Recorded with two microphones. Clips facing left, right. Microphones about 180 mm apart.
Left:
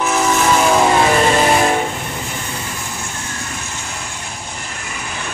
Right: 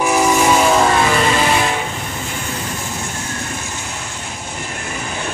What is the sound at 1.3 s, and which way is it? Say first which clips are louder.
Vehicle: left 3 dB; 40° left (ahead or behind).